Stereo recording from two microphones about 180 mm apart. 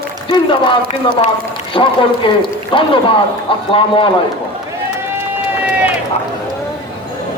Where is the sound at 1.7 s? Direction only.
30° left (ahead or behind).